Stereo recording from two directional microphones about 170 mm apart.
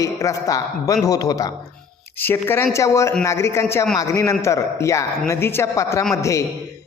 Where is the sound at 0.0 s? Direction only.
20° left (ahead or behind).